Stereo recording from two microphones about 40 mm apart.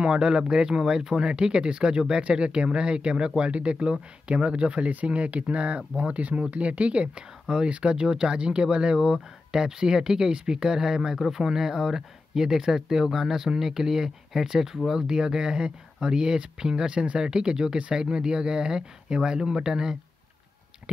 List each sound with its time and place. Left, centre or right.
0.0 s speech: centre
7.4 s speech: centre